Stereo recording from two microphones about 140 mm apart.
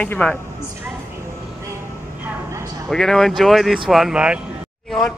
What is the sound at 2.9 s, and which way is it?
Speech, 5° left (ahead or behind).